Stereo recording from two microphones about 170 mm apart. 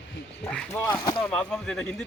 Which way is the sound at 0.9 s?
25° left (ahead or behind).